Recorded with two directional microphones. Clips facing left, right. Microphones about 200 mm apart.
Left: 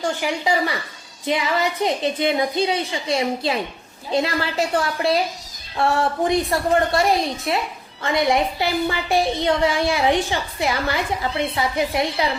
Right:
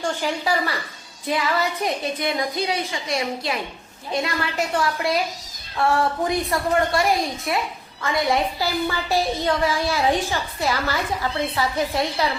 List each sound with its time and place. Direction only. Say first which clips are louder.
0.0 s a woman's voice: left 2 dB; 15° left (ahead or behind)